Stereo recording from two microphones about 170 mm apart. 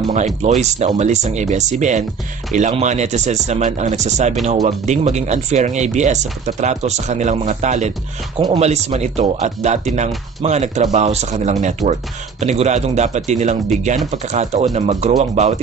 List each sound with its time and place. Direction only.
0.1 s speech: 40° right (ahead or behind)